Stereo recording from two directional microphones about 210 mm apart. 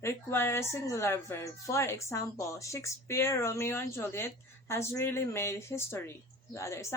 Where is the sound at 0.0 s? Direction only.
10° left (ahead or behind).